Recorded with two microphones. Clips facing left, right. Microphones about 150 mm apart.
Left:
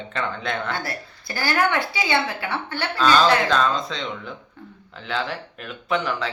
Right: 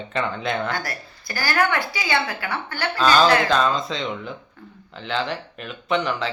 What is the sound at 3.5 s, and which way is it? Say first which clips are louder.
Speech: right 1 dB; centre (ahead or behind).